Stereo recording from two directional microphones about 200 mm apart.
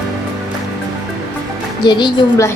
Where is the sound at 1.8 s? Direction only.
20° left (ahead or behind).